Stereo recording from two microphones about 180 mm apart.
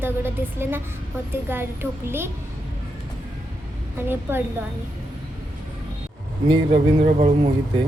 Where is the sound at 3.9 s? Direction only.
10° right (ahead or behind).